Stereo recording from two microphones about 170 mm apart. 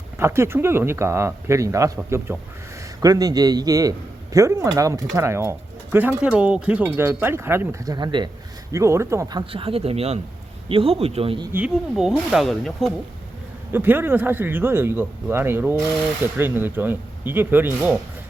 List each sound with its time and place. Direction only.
0.2 s a man's voice: 15° right (ahead or behind)
9.5 s speech: 30° right (ahead or behind)
11.5 s speech: 5° right (ahead or behind)
13.7 s speech: 10° right (ahead or behind)